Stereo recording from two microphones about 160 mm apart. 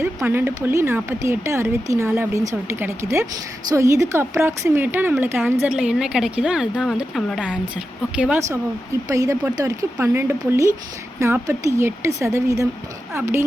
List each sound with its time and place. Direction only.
0.0 s speech: 15° right (ahead or behind)
9.0 s speech: 20° right (ahead or behind)